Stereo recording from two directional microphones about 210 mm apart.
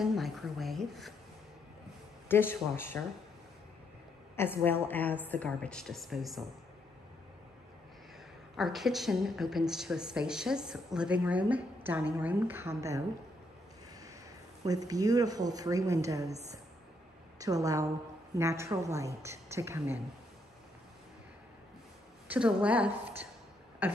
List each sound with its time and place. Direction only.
0.0 s a woman's voice: centre (ahead or behind)
2.2 s speech: 10° left (ahead or behind)
4.4 s a woman's voice: 10° left (ahead or behind)
8.5 s a woman's voice: centre (ahead or behind)
14.6 s speech: 15° right (ahead or behind)
17.4 s speech: 15° right (ahead or behind)
22.3 s a woman's voice: 5° right (ahead or behind)
23.8 s a sound: 10° right (ahead or behind)